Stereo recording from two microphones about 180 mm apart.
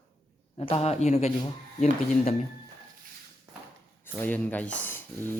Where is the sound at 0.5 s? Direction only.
35° left (ahead or behind).